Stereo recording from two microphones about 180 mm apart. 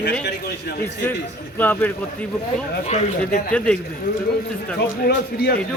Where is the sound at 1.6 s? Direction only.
10° left (ahead or behind).